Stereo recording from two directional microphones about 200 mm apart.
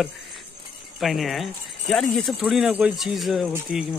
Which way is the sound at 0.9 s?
Centre (ahead or behind).